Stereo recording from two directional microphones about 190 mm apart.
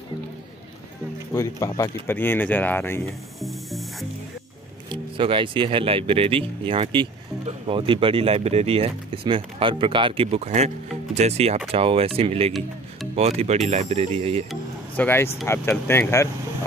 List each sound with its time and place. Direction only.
1.3 s speech: 15° left (ahead or behind)
3.3 s music: centre (ahead or behind)
5.1 s speech: 25° right (ahead or behind)
14.5 s speech: 10° left (ahead or behind)